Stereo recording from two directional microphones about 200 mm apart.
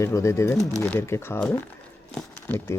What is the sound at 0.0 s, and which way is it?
Speech, 15° left (ahead or behind).